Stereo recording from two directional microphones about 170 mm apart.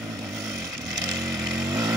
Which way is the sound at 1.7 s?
20° right (ahead or behind).